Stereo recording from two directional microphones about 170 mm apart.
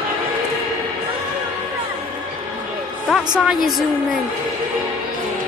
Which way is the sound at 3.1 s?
Centre (ahead or behind).